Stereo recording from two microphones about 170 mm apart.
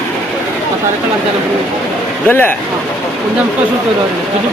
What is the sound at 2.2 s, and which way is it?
Speech, 10° left (ahead or behind).